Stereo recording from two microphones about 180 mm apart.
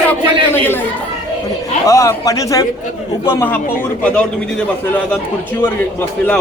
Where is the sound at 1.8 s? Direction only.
20° left (ahead or behind).